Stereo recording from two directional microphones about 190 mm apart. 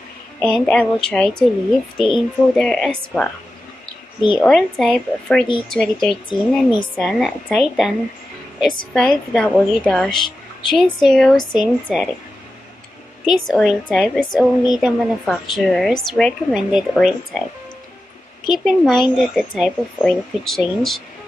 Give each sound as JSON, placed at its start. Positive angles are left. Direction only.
{"t": 0.4, "sound": "a woman's voice", "side_deg": 5}
{"t": 4.4, "sound": "a woman's voice", "side_deg": 0}
{"t": 6.2, "sound": "speech", "side_deg": 25}
{"t": 7.0, "sound": "a woman's voice", "side_deg": 0}
{"t": 13.5, "sound": "a woman's voice", "side_deg": 0}
{"t": 18.5, "sound": "a woman's voice", "side_deg": 0}